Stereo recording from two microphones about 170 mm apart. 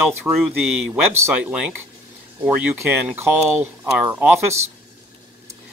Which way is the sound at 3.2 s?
10° right (ahead or behind).